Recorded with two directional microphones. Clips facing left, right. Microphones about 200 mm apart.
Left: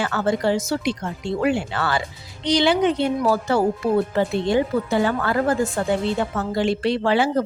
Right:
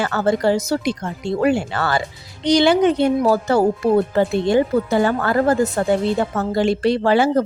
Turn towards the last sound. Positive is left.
turn(degrees=-45)  # may be behind; listen again after turning